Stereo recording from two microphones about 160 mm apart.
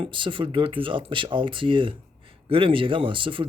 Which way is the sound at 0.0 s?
30° right (ahead or behind).